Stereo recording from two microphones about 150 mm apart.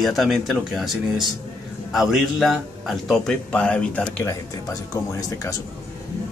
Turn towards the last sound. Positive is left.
turn(degrees=20)  # may be behind; listen again after turning